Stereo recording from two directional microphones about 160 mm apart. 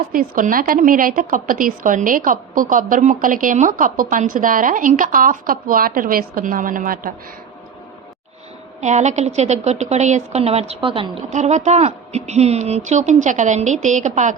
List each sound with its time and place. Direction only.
0.1 s a woman's voice: 60° right (ahead or behind)
8.8 s a woman's voice: 45° right (ahead or behind)
11.3 s a woman's voice: 50° right (ahead or behind)